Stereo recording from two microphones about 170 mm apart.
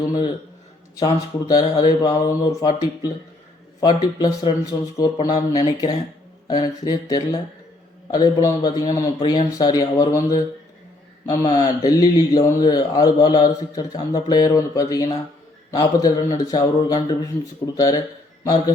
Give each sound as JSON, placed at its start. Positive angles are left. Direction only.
{"t": 0.0, "sound": "speech", "side_deg": 20}